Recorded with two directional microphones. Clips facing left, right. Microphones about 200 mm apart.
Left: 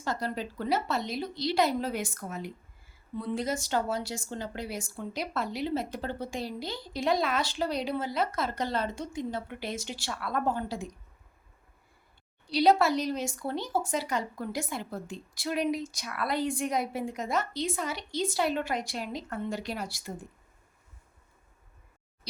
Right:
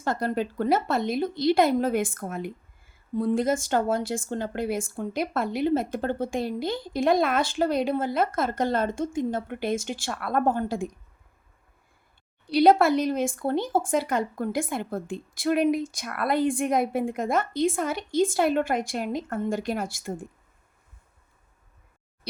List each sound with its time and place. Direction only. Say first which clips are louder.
0.0 s a woman's voice: right 6 dB; 55° right (ahead or behind)
12.5 s a woman's voice: right 5 dB; 55° right (ahead or behind)